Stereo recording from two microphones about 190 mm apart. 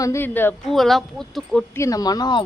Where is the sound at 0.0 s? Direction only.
15° left (ahead or behind).